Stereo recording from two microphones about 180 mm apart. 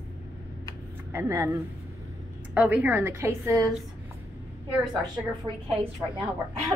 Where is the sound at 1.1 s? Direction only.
15° right (ahead or behind).